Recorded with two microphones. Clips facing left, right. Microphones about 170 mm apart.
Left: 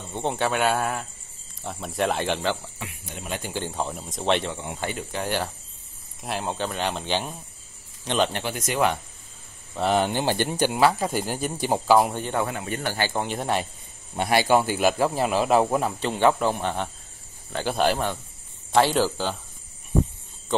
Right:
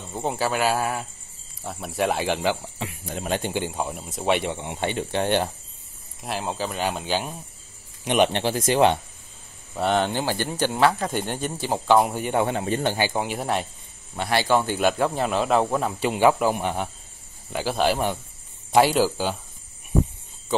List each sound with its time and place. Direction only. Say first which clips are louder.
0.1 s speech: even; 5° right (ahead or behind)
2.8 s speech: right 6 dB; 35° right (ahead or behind)
3.5 s speech: right 2 dB; 10° right (ahead or behind)
6.2 s speech: even; centre (ahead or behind)
8.0 s speech: right 4 dB; 15° right (ahead or behind)
9.8 s speech: even; 5° left (ahead or behind)
10.2 s speech: left 2 dB; 20° left (ahead or behind)
11.9 s speech: right 1 dB; centre (ahead or behind)
12.2 s speech: right 3 dB; 15° right (ahead or behind)
12.4 s speech: right 5 dB; 30° right (ahead or behind)
13.1 s speech: even; 5° right (ahead or behind)
14.1 s speech: left 1 dB; 15° left (ahead or behind)
15.9 s speech: right 2 dB; 10° right (ahead or behind)